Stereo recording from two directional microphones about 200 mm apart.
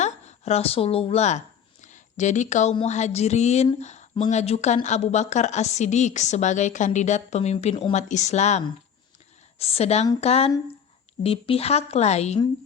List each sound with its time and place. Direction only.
0.0 s a woman's voice: 35° left (ahead or behind)
1.8 s a sound: 35° left (ahead or behind)
2.7 s speech: 35° left (ahead or behind)